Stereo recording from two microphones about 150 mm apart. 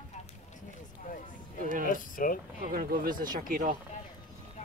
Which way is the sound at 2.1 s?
65° left (ahead or behind).